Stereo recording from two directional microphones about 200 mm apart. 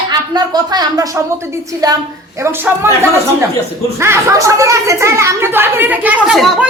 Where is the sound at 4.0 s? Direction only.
15° right (ahead or behind).